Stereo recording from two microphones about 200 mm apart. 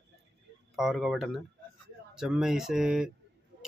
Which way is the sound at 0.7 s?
Centre (ahead or behind).